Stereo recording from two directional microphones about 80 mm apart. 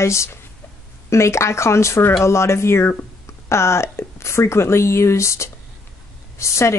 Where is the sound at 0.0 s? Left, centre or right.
Left.